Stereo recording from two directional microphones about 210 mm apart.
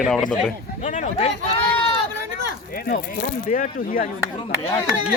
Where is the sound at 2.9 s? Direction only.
40° left (ahead or behind).